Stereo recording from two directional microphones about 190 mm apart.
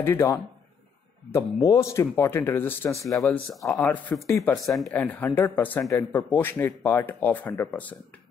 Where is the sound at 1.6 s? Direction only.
15° left (ahead or behind).